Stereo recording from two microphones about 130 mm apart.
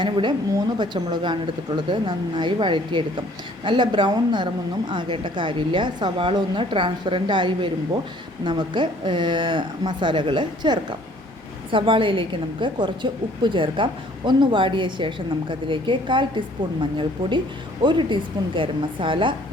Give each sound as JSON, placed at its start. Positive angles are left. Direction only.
{"t": 0.0, "sound": "a woman's voice", "side_deg": -35}